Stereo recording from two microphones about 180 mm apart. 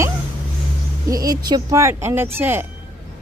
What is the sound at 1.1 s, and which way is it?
Speech, 20° right (ahead or behind).